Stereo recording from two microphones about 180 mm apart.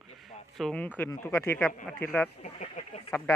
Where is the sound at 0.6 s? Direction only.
5° left (ahead or behind).